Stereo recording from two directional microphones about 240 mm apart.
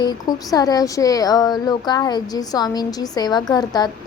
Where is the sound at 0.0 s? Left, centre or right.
Centre.